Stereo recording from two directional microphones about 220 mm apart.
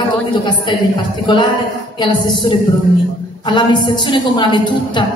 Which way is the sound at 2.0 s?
20° left (ahead or behind).